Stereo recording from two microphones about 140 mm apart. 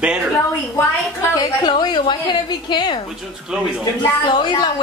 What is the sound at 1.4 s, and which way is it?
A woman's voice, 30° left (ahead or behind).